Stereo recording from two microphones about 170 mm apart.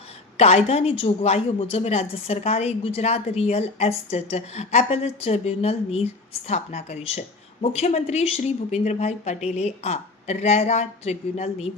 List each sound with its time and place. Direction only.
0.3 s a woman's voice: 40° left (ahead or behind)